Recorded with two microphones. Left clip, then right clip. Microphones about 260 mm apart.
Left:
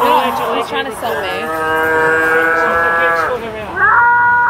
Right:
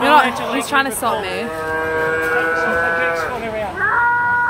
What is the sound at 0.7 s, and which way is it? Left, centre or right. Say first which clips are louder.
Speech: right 1 dB; right.